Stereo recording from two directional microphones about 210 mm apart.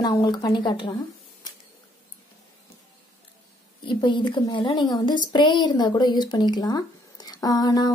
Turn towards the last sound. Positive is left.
turn(degrees=20)  # may be behind; listen again after turning